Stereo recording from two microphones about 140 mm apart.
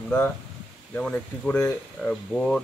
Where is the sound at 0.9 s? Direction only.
10° left (ahead or behind).